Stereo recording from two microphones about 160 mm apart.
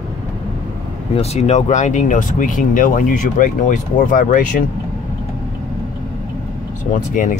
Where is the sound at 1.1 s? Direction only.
40° left (ahead or behind).